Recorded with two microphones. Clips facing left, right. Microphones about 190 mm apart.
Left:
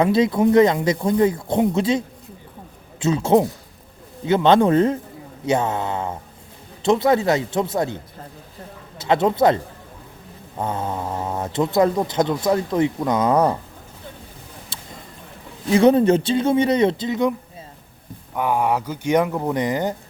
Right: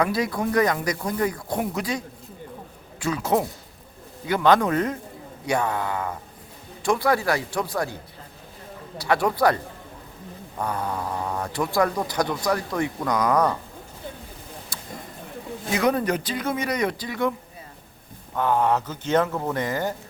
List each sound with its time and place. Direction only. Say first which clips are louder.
0.0 s speech: left 7 dB; 25° left (ahead or behind)
9.0 s speech: left 4 dB; 20° left (ahead or behind)
10.6 s speech: left 3 dB; 25° left (ahead or behind)
14.7 s a sound: even; 25° left (ahead or behind)
15.7 s speech: left 8 dB; 25° left (ahead or behind)
18.3 s speech: left 1 dB; 10° left (ahead or behind)